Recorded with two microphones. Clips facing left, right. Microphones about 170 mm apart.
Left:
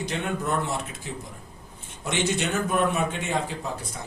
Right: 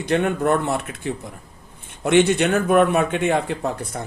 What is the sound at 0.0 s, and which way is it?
A man's voice, 60° right (ahead or behind).